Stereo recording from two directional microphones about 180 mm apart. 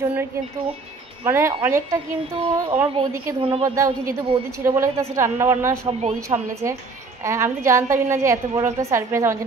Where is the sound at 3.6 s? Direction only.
20° right (ahead or behind).